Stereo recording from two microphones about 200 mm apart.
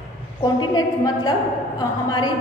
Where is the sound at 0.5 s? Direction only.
20° left (ahead or behind).